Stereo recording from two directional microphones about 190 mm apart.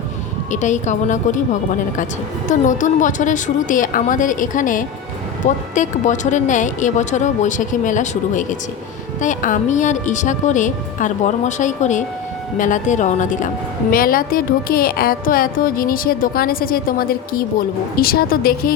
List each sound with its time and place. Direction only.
0.5 s a woman's voice: 40° left (ahead or behind)
2.5 s a woman's voice: 40° left (ahead or behind)